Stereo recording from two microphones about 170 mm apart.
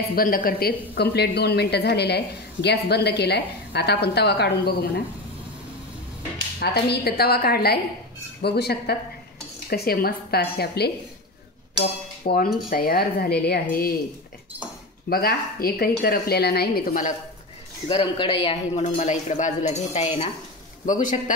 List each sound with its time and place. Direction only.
0.1 s a woman's voice: 60° left (ahead or behind); by 4.7 s 75° left (ahead or behind)
6.6 s a woman's voice: 70° left (ahead or behind)
12.2 s speech: 55° left (ahead or behind)
15.0 s speech: 60° left (ahead or behind)
17.8 s speech: 30° left (ahead or behind)
18.9 s speech: 45° left (ahead or behind)